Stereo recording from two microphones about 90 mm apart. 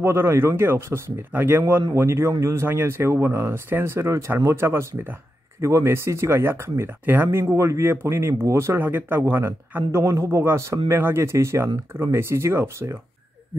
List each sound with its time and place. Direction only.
0.0 s speech: 25° right (ahead or behind)
9.8 s speech: 35° right (ahead or behind)